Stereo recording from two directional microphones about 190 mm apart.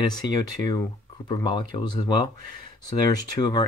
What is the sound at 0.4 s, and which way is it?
Speech, 20° left (ahead or behind).